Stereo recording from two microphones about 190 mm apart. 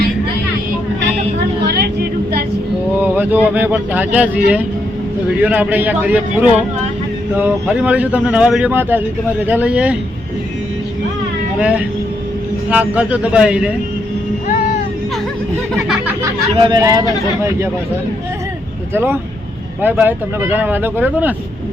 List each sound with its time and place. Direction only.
1.6 s a sound: 55° right (ahead or behind)
3.0 s speech: 10° right (ahead or behind)
11.6 s speech: 10° right (ahead or behind)
15.7 s a sound: 5° right (ahead or behind)
16.6 s speech: 20° right (ahead or behind)
18.9 s speech: 10° right (ahead or behind)